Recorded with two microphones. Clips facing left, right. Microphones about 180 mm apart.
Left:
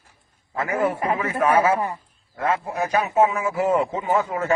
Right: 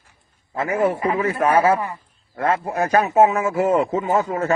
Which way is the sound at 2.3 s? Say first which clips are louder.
Right 3 dB; 50° right (ahead or behind).